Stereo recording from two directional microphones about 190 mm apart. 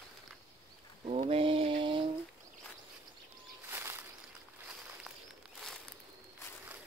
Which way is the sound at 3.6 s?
10° right (ahead or behind).